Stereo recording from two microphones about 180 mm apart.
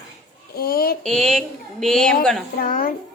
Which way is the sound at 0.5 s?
55° left (ahead or behind).